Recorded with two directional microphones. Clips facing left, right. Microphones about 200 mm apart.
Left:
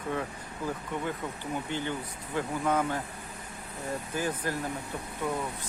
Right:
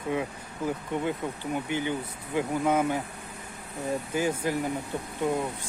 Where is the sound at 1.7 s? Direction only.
15° right (ahead or behind).